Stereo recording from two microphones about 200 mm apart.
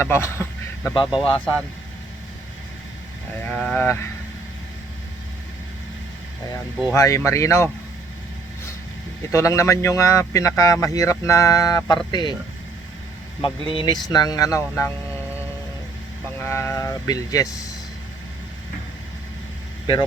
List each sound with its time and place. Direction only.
0.0 s a man's voice: 10° left (ahead or behind)
1.2 s speech: 25° left (ahead or behind)
3.4 s speech: 5° left (ahead or behind)
6.9 s speech: 15° left (ahead or behind)
9.3 s speech: 15° left (ahead or behind)
13.4 s speech: 25° left (ahead or behind)
16.4 s speech: 15° left (ahead or behind)